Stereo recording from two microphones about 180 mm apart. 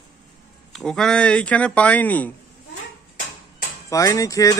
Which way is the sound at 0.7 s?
5° left (ahead or behind).